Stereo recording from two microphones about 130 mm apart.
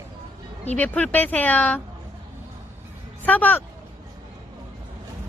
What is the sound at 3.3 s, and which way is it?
Speech, 15° left (ahead or behind).